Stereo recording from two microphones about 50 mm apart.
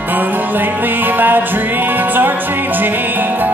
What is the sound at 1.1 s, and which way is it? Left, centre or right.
Music, right.